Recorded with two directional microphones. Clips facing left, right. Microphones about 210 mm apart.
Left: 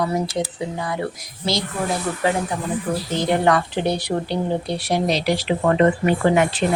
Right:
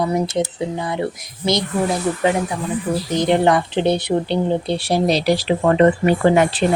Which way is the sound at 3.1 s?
20° right (ahead or behind).